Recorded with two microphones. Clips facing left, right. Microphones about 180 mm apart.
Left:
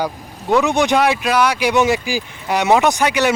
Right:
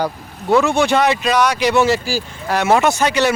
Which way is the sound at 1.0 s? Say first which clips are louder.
Even; 5° left (ahead or behind).